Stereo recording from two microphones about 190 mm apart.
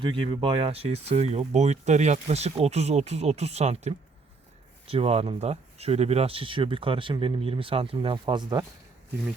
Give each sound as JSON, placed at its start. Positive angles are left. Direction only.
{"t": 0.0, "sound": "speech", "side_deg": -25}